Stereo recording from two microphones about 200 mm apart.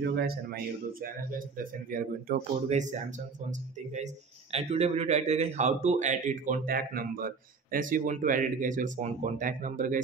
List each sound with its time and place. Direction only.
0.0 s speech: 55° right (ahead or behind)
1.6 s a man's voice: 45° right (ahead or behind)